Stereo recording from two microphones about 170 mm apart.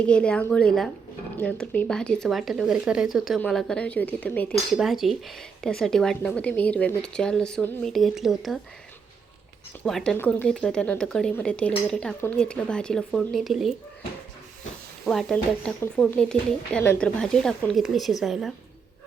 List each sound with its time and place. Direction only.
0.0 s a woman's voice: 5° left (ahead or behind)
9.8 s speech: 5° left (ahead or behind)
15.0 s speech: 5° left (ahead or behind)